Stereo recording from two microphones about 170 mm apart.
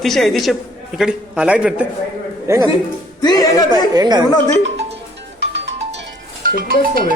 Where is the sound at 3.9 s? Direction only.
25° right (ahead or behind).